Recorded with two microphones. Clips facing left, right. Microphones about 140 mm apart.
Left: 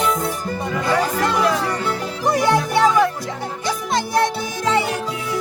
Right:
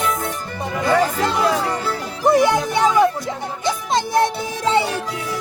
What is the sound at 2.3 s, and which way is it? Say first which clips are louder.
Music: right 2 dB; 20° right (ahead or behind).